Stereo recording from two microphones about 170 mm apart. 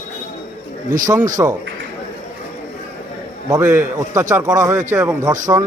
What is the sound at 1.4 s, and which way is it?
Speech, 20° right (ahead or behind).